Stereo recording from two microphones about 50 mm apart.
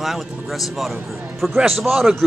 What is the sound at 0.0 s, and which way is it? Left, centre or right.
A man's voice, centre.